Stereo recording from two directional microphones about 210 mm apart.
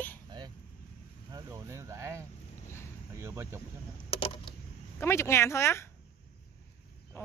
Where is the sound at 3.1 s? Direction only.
15° right (ahead or behind).